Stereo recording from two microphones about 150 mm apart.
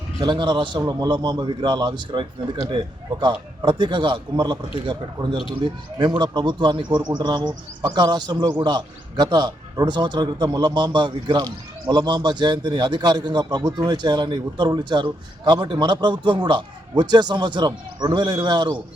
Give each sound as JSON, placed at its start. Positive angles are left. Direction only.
{"t": 0.2, "sound": "a man's voice", "side_deg": -30}